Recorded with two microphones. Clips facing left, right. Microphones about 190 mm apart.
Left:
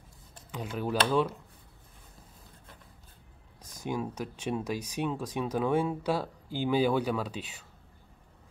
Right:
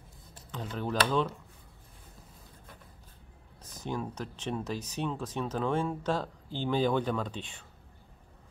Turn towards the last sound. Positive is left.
turn(degrees=5)  # may be behind; listen again after turning